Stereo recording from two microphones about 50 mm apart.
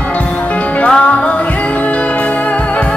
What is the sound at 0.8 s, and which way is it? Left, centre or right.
Music, left.